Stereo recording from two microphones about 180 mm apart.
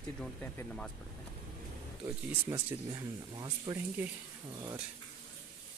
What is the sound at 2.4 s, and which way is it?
Speech, 20° right (ahead or behind).